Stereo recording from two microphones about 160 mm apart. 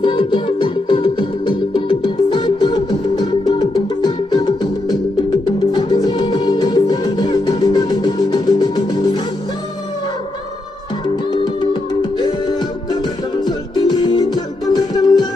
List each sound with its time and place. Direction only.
0.0 s music: 30° left (ahead or behind)
11.4 s music: 30° left (ahead or behind)